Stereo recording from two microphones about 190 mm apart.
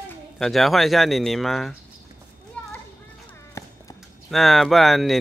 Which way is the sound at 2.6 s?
5° left (ahead or behind).